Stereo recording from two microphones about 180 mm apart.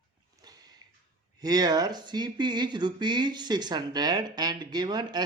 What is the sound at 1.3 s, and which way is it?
Speech, 20° right (ahead or behind).